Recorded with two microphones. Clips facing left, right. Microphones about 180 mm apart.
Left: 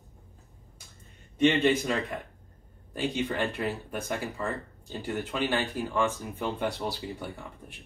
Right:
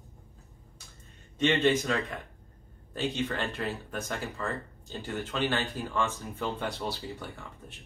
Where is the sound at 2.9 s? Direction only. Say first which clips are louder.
Left 2 dB; 15° left (ahead or behind).